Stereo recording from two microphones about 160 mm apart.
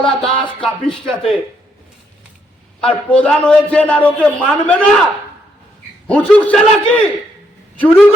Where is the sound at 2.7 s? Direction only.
5° left (ahead or behind).